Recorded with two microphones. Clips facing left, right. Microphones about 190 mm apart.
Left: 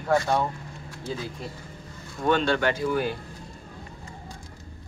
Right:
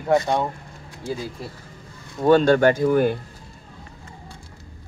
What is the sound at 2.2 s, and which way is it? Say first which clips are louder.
Speech: right 8 dB; 40° right (ahead or behind).